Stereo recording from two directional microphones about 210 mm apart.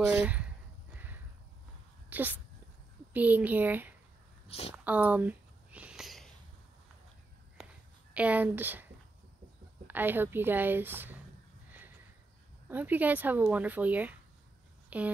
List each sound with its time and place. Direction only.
0.0 s speech: 5° right (ahead or behind)
2.0 s a woman's voice: 10° right (ahead or behind)
4.5 s speech: 30° left (ahead or behind)
4.7 s a sound: 5° right (ahead or behind)
8.1 s a woman's voice: 5° right (ahead or behind)
9.8 s a woman's voice: 10° right (ahead or behind)
12.6 s a woman's voice: 10° right (ahead or behind)
14.9 s a sound: 5° right (ahead or behind)